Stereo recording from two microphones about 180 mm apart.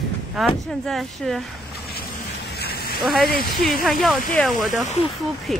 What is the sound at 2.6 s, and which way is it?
Vehicle, 55° left (ahead or behind).